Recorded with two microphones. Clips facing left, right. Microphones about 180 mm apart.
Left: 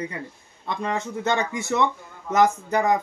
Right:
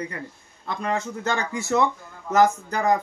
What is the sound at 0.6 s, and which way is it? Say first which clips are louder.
Speech: even; 20° left (ahead or behind).